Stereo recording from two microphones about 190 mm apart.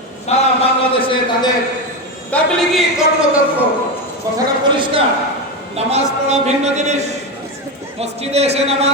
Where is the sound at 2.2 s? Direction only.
Centre (ahead or behind).